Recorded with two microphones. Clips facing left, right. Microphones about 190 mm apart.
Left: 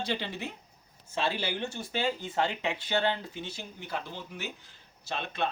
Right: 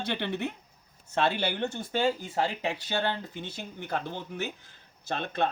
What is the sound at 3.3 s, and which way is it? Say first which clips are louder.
Speech: right 1 dB; 55° right (ahead or behind).